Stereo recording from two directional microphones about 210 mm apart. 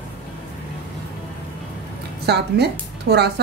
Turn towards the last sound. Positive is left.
turn(degrees=-50)  # may be behind; listen again after turning